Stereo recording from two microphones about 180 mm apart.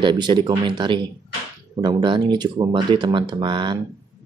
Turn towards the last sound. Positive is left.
turn(degrees=-25)  # may be behind; listen again after turning